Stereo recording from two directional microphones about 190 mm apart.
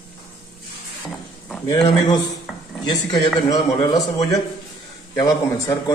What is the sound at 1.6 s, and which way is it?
A man's voice, 20° left (ahead or behind).